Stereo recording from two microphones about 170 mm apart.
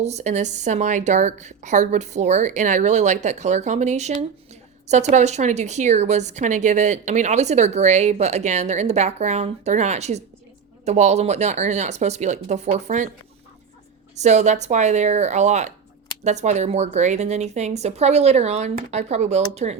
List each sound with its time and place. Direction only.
0.0 s speech: 40° right (ahead or behind)
5.1 s a woman's voice: 45° right (ahead or behind)
14.2 s a woman's voice: 40° right (ahead or behind)